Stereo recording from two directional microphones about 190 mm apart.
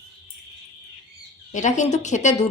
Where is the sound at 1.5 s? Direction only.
40° left (ahead or behind).